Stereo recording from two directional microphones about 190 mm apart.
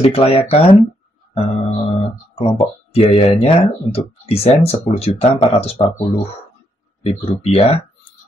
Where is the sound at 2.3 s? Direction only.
30° left (ahead or behind).